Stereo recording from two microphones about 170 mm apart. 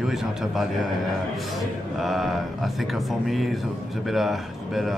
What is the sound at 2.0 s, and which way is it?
Speech, centre (ahead or behind).